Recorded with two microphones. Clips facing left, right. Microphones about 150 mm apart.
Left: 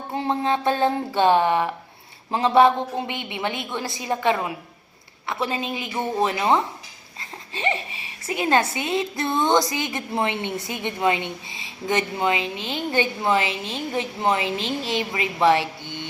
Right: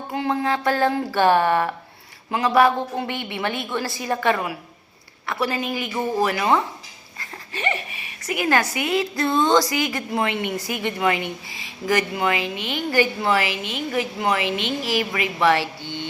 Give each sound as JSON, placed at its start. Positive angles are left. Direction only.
{"t": 0.1, "sound": "speech", "side_deg": 25}
{"t": 2.3, "sound": "speech", "side_deg": 25}
{"t": 15.6, "sound": "speech", "side_deg": -20}